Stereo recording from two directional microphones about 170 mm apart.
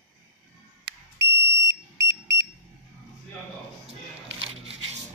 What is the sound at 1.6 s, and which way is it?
Smoke detector, 20° right (ahead or behind).